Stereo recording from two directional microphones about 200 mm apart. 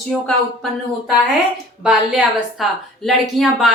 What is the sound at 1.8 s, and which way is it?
A woman's voice, 5° right (ahead or behind).